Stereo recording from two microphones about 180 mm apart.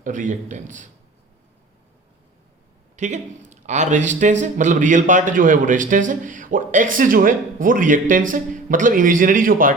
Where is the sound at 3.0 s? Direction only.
40° right (ahead or behind).